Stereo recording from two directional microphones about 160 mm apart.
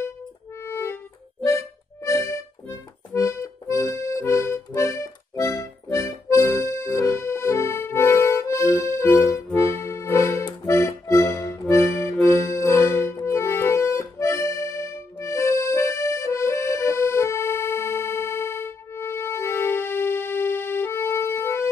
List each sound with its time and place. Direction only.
0.7 s music: 15° left (ahead or behind)
2.0 s accordion: 20° left (ahead or behind)